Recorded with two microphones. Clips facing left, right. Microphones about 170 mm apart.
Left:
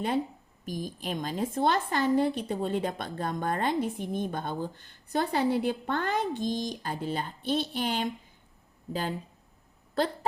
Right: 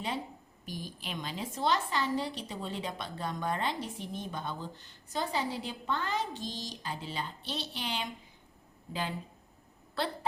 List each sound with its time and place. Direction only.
0.6 s a woman's voice: 45° left (ahead or behind)